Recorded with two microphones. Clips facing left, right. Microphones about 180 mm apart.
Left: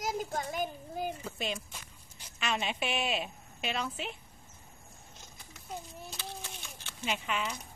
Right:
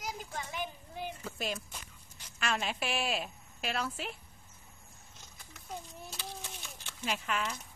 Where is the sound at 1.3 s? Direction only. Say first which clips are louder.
Left 1 dB; centre (ahead or behind).